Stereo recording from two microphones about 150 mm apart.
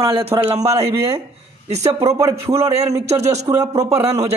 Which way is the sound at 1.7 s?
45° right (ahead or behind).